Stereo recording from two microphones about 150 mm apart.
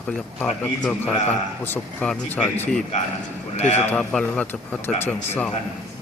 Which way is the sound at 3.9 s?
5° left (ahead or behind).